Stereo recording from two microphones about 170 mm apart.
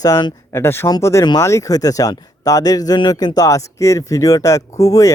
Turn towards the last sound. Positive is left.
turn(degrees=20)  # may be behind; listen again after turning